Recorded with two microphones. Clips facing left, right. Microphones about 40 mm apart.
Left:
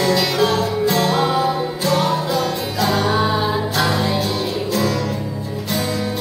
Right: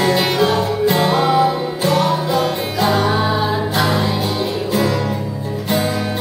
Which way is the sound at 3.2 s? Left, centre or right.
Centre.